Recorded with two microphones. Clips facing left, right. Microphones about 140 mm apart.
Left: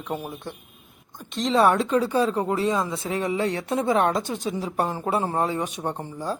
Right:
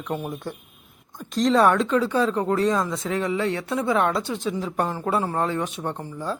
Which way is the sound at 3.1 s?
15° left (ahead or behind).